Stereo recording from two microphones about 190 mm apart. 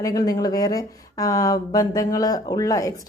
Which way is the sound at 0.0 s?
20° left (ahead or behind).